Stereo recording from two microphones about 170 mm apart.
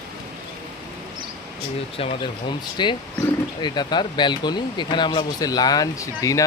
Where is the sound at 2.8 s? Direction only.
25° left (ahead or behind).